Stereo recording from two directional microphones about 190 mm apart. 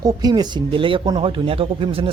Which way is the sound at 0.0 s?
20° right (ahead or behind).